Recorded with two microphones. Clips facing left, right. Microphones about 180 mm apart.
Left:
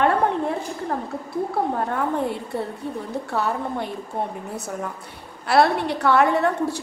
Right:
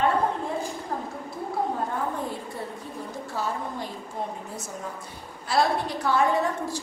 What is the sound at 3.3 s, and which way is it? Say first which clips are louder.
Speech: left 5 dB; 65° left (ahead or behind).